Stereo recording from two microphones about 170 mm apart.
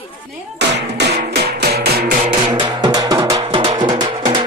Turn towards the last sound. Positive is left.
turn(degrees=-25)  # may be behind; listen again after turning